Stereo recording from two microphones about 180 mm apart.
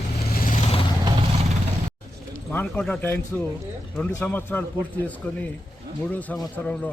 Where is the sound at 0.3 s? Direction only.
50° left (ahead or behind).